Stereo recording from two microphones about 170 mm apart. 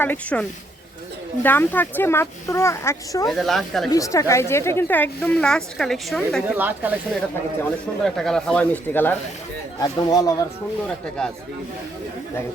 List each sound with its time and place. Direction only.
0.0 s a woman's voice: 10° left (ahead or behind)
3.2 s speech: centre (ahead or behind)
3.9 s a woman's voice: 20° left (ahead or behind); by 6.6 s centre (ahead or behind)
6.6 s speech: 10° right (ahead or behind)
7.6 s a woman's voice: 5° left (ahead or behind)
9.8 s speech: 20° left (ahead or behind)